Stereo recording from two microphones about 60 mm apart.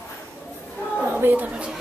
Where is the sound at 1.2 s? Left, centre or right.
Right.